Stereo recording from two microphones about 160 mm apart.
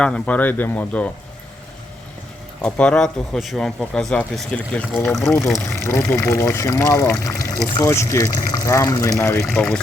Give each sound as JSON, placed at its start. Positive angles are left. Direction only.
{"t": 0.0, "sound": "speech", "side_deg": 10}
{"t": 2.6, "sound": "speech", "side_deg": 5}
{"t": 9.5, "sound": "speech", "side_deg": 5}